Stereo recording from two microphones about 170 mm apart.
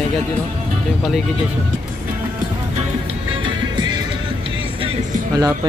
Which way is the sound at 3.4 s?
25° right (ahead or behind).